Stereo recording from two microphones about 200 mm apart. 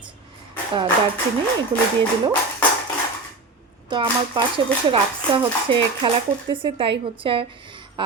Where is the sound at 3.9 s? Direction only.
25° right (ahead or behind).